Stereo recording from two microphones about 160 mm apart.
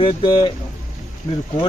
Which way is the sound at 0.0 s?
30° left (ahead or behind).